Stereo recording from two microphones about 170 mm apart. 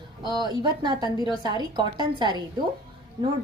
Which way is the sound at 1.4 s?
25° right (ahead or behind).